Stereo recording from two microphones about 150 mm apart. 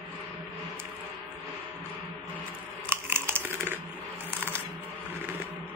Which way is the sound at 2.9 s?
15° right (ahead or behind).